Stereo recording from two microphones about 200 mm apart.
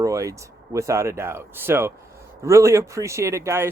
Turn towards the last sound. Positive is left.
turn(degrees=-15)  # may be behind; listen again after turning